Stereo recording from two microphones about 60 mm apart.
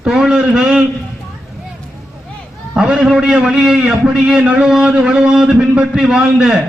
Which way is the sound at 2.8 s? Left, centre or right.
Centre.